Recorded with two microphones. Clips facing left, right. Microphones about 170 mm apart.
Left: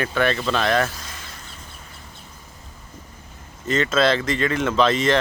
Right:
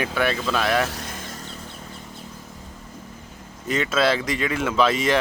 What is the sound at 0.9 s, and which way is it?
Vehicle, 60° right (ahead or behind).